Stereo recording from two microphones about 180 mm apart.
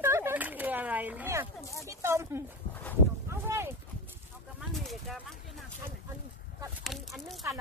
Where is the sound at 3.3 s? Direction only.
15° right (ahead or behind).